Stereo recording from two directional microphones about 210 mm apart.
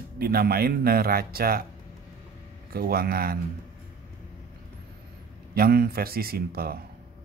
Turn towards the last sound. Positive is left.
turn(degrees=-45)  # may be behind; listen again after turning